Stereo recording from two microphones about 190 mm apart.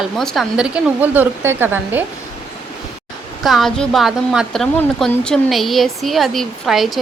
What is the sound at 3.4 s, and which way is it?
A woman's voice, centre (ahead or behind).